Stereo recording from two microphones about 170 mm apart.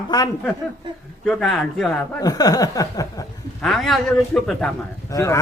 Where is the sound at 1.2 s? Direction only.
Centre (ahead or behind).